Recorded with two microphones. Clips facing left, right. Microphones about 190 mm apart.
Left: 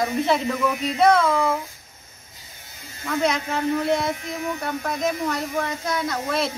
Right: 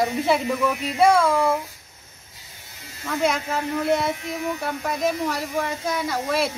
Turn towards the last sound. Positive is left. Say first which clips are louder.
# right 1 dB
turn(degrees=-5)  # may be behind; listen again after turning